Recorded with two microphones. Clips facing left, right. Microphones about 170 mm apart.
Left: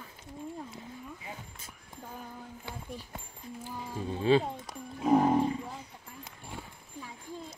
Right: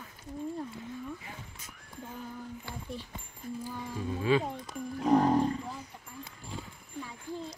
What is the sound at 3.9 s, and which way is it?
Cat, 30° left (ahead or behind).